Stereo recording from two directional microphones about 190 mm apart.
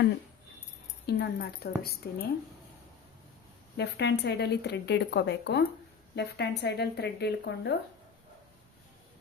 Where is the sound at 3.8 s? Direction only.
60° left (ahead or behind).